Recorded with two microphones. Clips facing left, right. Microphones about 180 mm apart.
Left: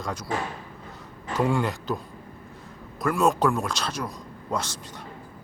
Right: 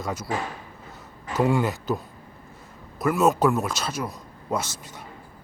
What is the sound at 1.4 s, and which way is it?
Speech, 5° right (ahead or behind).